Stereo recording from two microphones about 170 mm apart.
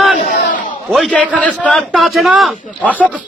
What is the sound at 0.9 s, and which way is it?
A man's voice, 5° left (ahead or behind).